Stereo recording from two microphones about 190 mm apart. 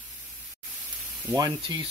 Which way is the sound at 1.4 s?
25° right (ahead or behind).